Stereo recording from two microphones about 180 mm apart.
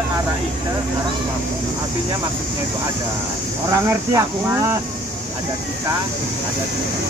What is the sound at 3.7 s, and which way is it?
Speech, 20° right (ahead or behind).